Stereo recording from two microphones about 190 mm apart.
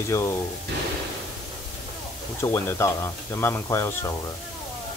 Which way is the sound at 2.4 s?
15° left (ahead or behind).